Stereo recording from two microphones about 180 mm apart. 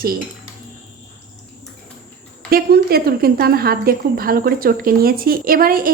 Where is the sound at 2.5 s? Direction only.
55° right (ahead or behind).